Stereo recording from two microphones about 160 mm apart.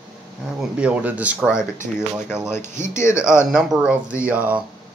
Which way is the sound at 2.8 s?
15° left (ahead or behind).